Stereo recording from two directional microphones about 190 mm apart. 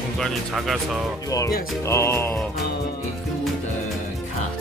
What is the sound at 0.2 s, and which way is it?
Speech, centre (ahead or behind).